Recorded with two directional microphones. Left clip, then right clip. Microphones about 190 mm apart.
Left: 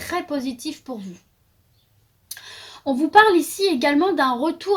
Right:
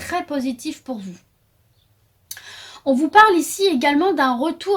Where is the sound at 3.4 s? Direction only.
40° right (ahead or behind).